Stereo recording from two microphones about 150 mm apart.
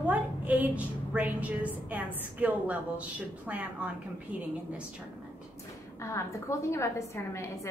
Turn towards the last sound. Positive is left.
turn(degrees=20)  # may be behind; listen again after turning